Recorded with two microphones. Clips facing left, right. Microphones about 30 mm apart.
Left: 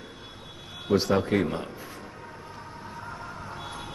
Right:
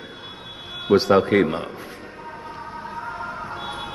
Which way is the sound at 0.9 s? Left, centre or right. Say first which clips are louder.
Right 7 dB; right.